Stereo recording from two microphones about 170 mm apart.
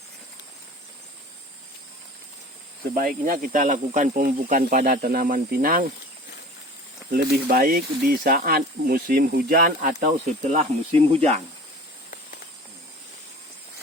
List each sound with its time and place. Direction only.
3.2 s speech: 55° right (ahead or behind)
7.1 s speech: 60° right (ahead or behind); by 11.3 s 40° right (ahead or behind)